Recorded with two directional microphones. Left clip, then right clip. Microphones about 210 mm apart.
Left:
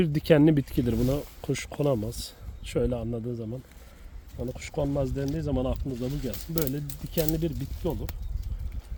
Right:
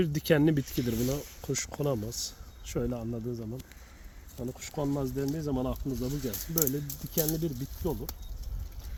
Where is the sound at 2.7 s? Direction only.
40° left (ahead or behind).